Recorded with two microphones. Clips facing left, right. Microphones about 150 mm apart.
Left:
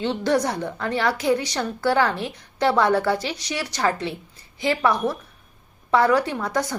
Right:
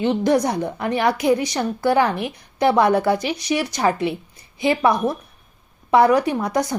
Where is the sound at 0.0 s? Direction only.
15° right (ahead or behind).